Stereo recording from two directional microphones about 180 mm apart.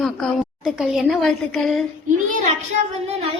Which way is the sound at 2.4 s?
40° right (ahead or behind).